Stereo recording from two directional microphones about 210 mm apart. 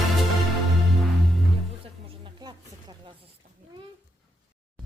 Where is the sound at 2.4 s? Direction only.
20° right (ahead or behind).